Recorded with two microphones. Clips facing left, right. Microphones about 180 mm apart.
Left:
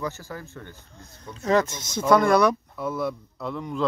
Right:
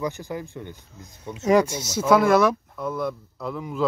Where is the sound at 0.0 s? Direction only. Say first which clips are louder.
Right 4 dB; 15° right (ahead or behind).